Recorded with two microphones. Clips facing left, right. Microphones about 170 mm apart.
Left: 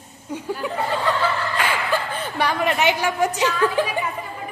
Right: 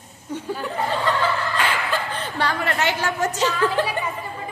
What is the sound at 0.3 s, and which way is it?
Speech, 10° left (ahead or behind).